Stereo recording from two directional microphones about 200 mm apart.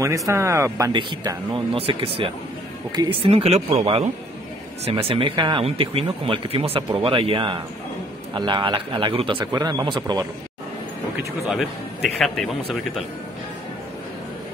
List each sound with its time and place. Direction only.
0.3 s speech: 15° right (ahead or behind)
11.4 s speech: centre (ahead or behind)